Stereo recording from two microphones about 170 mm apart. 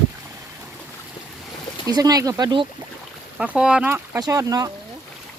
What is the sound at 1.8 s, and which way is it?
Speech, 20° right (ahead or behind).